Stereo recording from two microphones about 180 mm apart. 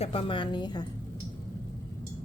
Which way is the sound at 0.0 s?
30° left (ahead or behind).